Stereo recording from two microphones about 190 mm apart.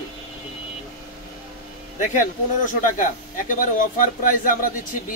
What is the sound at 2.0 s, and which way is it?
Speech, 45° left (ahead or behind).